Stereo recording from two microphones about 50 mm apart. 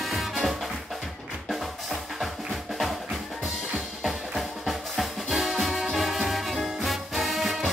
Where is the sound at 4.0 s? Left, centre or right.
Centre.